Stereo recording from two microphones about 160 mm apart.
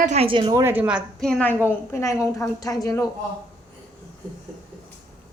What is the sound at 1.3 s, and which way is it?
A woman's voice, 10° left (ahead or behind).